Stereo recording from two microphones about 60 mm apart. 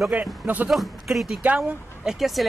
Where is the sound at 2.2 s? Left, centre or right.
Centre.